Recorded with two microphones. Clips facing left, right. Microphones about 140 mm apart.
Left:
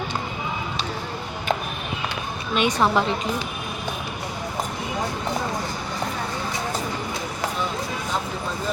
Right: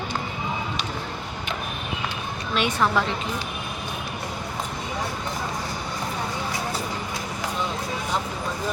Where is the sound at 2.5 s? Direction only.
20° left (ahead or behind).